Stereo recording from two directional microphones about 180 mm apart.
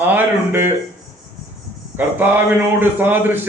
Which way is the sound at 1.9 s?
10° right (ahead or behind).